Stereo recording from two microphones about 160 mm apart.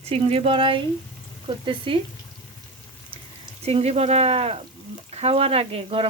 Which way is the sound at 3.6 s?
40° right (ahead or behind).